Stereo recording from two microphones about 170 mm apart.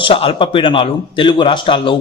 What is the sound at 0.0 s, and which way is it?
A man's voice, 35° left (ahead or behind).